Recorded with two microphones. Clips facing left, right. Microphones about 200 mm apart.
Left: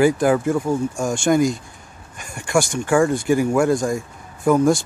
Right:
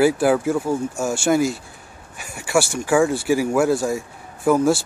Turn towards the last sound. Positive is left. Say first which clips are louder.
# left 1 dB
turn(degrees=-5)  # may be behind; listen again after turning